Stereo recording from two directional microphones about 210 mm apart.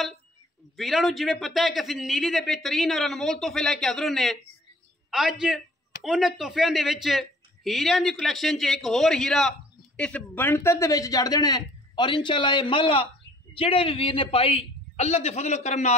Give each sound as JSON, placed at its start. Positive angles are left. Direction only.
{"t": 0.7, "sound": "a man's voice", "side_deg": 0}